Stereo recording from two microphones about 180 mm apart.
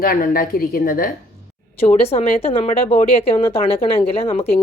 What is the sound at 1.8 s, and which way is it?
A woman's voice, 35° left (ahead or behind).